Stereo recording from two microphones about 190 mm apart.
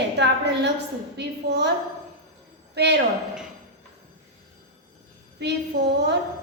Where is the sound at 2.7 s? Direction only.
60° right (ahead or behind).